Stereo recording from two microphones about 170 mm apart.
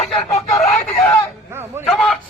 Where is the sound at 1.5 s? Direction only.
15° right (ahead or behind).